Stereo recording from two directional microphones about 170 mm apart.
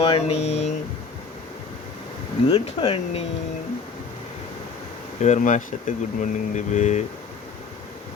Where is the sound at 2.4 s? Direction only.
30° left (ahead or behind).